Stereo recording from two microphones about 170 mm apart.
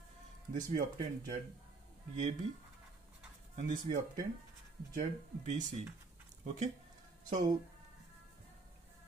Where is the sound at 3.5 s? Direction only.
50° right (ahead or behind).